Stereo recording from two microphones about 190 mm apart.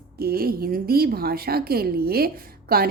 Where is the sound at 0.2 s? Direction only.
55° right (ahead or behind).